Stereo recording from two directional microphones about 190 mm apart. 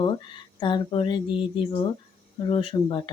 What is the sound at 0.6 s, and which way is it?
Speech, 25° left (ahead or behind).